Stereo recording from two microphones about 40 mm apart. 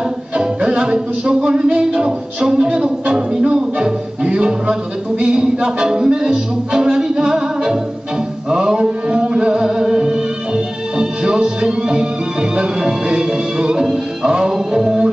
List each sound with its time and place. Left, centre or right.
0.4 s music: right
5.2 s speech: centre
8.5 s music: centre